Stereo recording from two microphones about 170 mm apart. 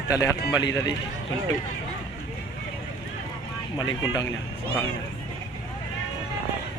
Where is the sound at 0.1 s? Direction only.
20° left (ahead or behind).